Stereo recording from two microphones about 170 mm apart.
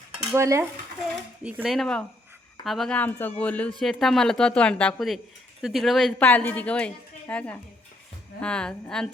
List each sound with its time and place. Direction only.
0.3 s stir: 15° right (ahead or behind)
1.5 s a woman's voice: 5° right (ahead or behind)